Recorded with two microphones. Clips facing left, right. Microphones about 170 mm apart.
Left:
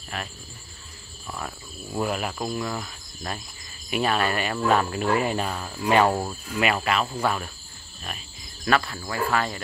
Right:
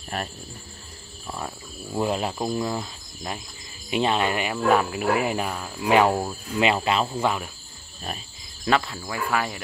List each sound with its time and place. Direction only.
1.2 s speech: 15° right (ahead or behind)
3.9 s cricket: 20° right (ahead or behind)
6.6 s speech: 25° right (ahead or behind)
7.1 s cricket: 15° right (ahead or behind)
8.6 s cricket: 20° right (ahead or behind)